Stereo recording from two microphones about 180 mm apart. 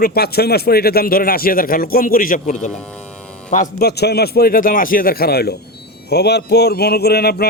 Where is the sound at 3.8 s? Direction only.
65° left (ahead or behind).